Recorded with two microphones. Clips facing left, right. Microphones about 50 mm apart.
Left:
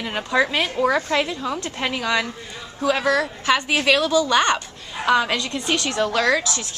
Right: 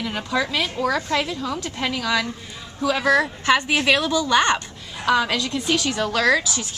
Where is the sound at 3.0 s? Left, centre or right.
Right.